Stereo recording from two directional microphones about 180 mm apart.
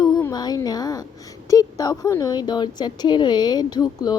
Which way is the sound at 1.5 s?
20° left (ahead or behind).